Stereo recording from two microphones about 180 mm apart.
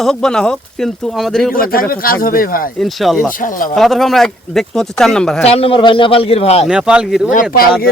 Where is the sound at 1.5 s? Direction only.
55° left (ahead or behind).